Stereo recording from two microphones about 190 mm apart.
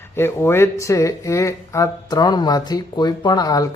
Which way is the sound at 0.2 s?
10° left (ahead or behind).